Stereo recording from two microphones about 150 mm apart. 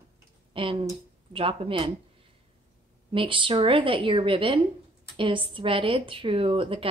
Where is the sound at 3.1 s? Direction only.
35° right (ahead or behind).